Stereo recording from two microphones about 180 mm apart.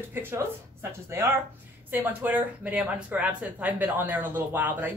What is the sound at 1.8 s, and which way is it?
Speech, 10° right (ahead or behind).